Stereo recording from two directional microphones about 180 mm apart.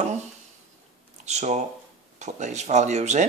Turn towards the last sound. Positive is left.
turn(degrees=-40)  # may be behind; listen again after turning